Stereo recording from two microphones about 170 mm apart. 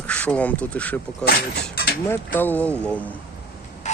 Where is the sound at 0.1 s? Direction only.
5° left (ahead or behind).